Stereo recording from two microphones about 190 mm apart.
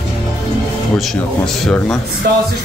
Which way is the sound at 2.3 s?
50° right (ahead or behind).